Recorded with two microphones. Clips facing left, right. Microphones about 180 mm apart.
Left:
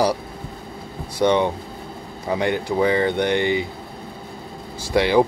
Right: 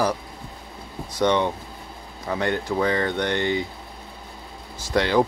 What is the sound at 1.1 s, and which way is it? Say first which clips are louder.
Speech: left 3 dB; 10° left (ahead or behind).